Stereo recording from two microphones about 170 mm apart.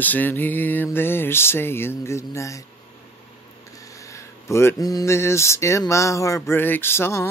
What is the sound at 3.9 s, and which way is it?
Speech, 20° left (ahead or behind).